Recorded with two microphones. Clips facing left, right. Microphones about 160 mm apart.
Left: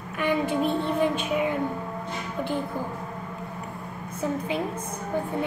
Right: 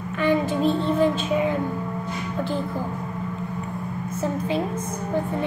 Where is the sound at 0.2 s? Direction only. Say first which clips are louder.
Right 3 dB; 15° left (ahead or behind).